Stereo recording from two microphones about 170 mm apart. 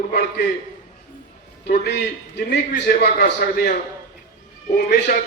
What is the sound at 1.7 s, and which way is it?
Speech, 80° left.